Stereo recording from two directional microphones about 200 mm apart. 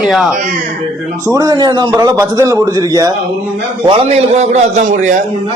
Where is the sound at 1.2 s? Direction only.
15° right (ahead or behind).